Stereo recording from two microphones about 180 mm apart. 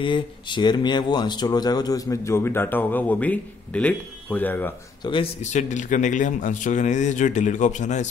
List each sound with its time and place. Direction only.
0.0 s speech: 25° left (ahead or behind); by 4.7 s 10° left (ahead or behind)
5.0 s a man's voice: 30° left (ahead or behind)
5.4 s speech: 40° left (ahead or behind)